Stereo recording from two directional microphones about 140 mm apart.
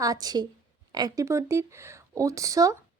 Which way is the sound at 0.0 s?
25° right (ahead or behind).